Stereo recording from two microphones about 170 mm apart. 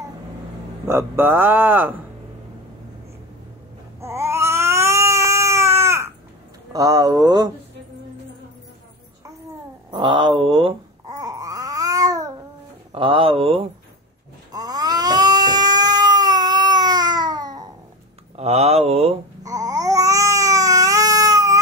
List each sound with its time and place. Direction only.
0.8 s speech: 15° right (ahead or behind)
4.0 s cat: 15° right (ahead or behind)
6.7 s speech: 20° right (ahead or behind)
9.8 s a sound: 30° right (ahead or behind)
12.9 s speech: 30° right (ahead or behind)
14.5 s cat: 20° right (ahead or behind)
18.3 s speech: 40° right (ahead or behind)
19.4 s babbling: 20° right (ahead or behind)